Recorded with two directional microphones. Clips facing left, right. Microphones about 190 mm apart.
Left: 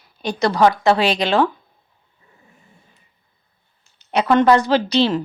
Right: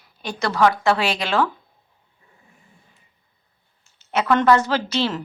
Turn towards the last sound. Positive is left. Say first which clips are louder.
# left 6 dB
turn(degrees=25)  # may be behind; listen again after turning